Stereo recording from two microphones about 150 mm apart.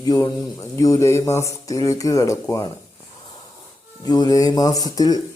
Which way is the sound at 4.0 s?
25° left (ahead or behind).